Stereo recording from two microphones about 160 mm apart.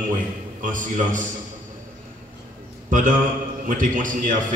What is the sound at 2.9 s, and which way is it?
Mantra, 55° right (ahead or behind).